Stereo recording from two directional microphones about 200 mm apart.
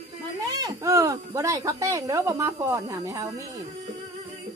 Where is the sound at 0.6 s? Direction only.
15° right (ahead or behind).